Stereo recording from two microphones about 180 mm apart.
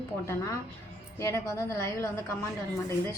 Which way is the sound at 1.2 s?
15° left (ahead or behind).